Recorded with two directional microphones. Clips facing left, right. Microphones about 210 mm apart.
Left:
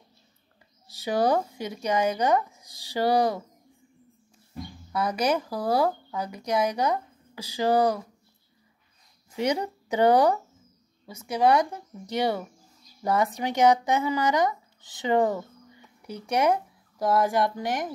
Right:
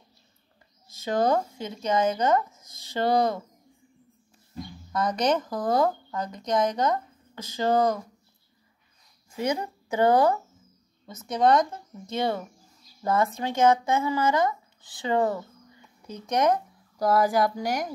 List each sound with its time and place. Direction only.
0.9 s speech: 15° left (ahead or behind)
4.9 s speech: 10° left (ahead or behind)
9.3 s speech: 20° left (ahead or behind); by 17.9 s centre (ahead or behind)